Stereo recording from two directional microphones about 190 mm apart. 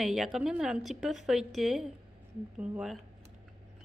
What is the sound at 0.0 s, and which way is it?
A woman's voice, centre (ahead or behind).